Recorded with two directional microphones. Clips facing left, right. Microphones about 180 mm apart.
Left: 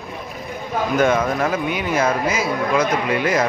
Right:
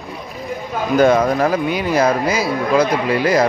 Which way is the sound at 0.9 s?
35° right (ahead or behind).